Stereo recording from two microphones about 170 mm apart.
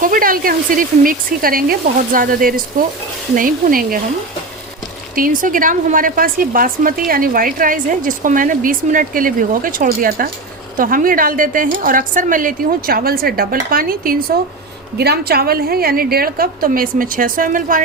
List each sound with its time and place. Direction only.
0.0 s speech: 55° right (ahead or behind)
5.1 s speech: 55° right (ahead or behind)
14.9 s speech: 70° right (ahead or behind); by 17.7 s 55° right (ahead or behind)